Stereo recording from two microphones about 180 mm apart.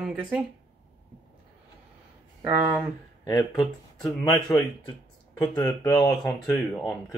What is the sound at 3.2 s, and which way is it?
Speech, 20° left (ahead or behind).